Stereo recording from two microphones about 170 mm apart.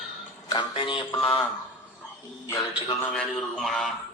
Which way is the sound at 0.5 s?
30° left (ahead or behind).